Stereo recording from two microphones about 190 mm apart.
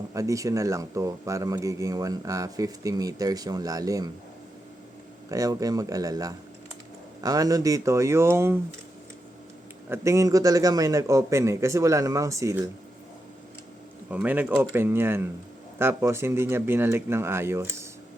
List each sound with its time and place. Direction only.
0.1 s speech: 15° right (ahead or behind)
5.3 s speech: 20° right (ahead or behind)
9.9 s speech: 15° right (ahead or behind)
14.1 s speech: 10° right (ahead or behind)